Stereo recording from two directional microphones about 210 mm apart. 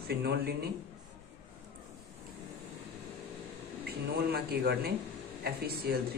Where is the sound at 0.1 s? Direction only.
50° right (ahead or behind).